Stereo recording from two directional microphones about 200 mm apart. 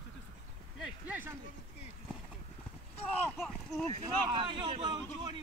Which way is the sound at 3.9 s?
25° right (ahead or behind).